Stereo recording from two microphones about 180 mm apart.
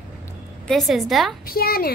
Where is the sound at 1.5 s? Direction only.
55° left (ahead or behind).